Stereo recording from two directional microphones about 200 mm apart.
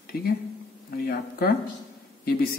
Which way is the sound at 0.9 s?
45° left (ahead or behind).